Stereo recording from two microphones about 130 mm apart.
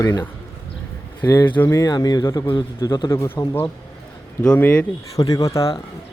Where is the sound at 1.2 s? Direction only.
15° left (ahead or behind).